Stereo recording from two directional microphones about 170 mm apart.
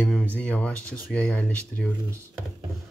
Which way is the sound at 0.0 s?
10° left (ahead or behind).